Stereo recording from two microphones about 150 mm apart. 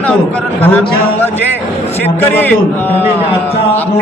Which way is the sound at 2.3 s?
10° left (ahead or behind).